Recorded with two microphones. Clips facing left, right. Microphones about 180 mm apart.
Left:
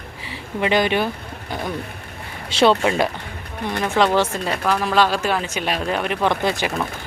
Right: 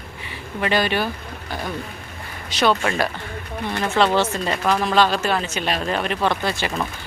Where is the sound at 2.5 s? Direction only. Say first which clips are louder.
Left 4 dB; 25° left (ahead or behind).